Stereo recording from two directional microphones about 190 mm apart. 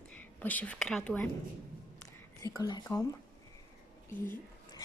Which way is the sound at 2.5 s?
25° left (ahead or behind).